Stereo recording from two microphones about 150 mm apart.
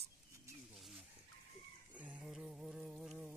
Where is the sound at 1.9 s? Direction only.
10° right (ahead or behind).